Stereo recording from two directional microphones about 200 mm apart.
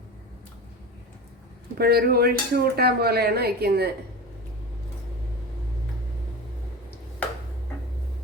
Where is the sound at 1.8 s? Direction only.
50° right (ahead or behind).